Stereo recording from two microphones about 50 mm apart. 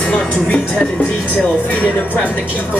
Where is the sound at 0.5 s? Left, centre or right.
Left.